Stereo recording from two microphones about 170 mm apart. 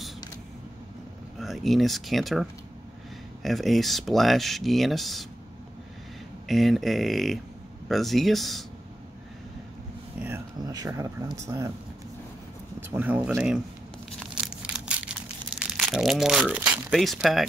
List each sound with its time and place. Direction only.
1.4 s speech: centre (ahead or behind)
3.4 s speech: centre (ahead or behind)
6.4 s speech: centre (ahead or behind)
10.6 s speech: 20° right (ahead or behind)
12.9 s speech: 10° right (ahead or behind)
14.2 s a sound: 5° right (ahead or behind)
15.6 s speech: centre (ahead or behind)